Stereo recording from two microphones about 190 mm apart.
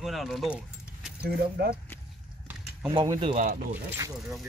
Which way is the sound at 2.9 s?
25° right (ahead or behind).